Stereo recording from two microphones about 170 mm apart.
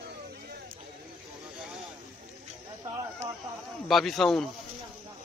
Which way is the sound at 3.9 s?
Centre (ahead or behind).